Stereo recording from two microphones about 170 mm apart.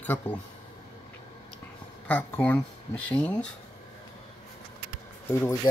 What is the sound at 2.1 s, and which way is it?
Speech, 10° left (ahead or behind).